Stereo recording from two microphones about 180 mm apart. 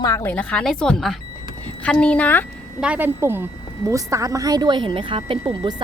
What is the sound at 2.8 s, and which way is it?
A woman's voice, 10° right (ahead or behind).